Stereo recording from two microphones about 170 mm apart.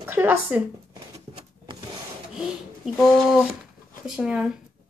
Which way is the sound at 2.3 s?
5° right (ahead or behind).